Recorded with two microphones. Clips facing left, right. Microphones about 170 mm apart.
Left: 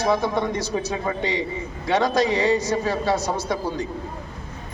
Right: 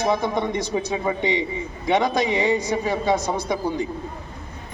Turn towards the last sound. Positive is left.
turn(degrees=-15)  # may be behind; listen again after turning